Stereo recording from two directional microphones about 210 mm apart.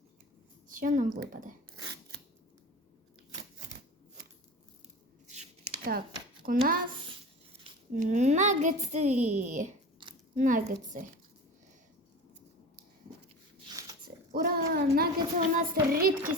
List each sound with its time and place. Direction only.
0.7 s a woman's voice: 40° right (ahead or behind)
5.3 s a sound: 40° right (ahead or behind)
6.4 s speech: 45° right (ahead or behind)
10.0 s squish: 25° right (ahead or behind)
10.3 s speech: 40° right (ahead or behind)
14.3 s speech: 45° right (ahead or behind)